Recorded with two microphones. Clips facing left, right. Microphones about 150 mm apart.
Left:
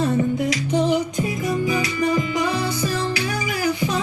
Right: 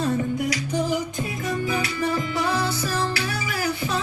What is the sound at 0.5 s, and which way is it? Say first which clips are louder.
Music: left 5 dB; 20° left (ahead or behind).